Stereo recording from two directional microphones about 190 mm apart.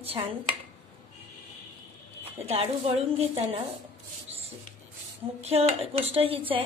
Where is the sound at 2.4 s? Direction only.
30° right (ahead or behind).